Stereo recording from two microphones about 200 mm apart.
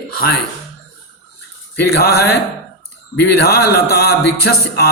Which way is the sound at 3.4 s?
50° left (ahead or behind).